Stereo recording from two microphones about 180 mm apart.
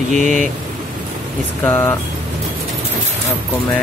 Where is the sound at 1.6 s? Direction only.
10° left (ahead or behind).